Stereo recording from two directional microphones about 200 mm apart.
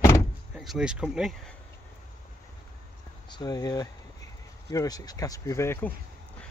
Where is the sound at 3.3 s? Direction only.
20° left (ahead or behind).